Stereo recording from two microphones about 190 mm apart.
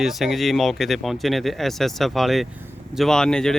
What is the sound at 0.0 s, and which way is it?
Speech, centre (ahead or behind).